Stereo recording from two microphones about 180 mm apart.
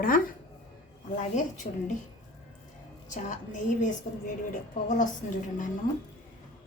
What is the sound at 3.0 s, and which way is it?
A woman's voice, 45° left (ahead or behind).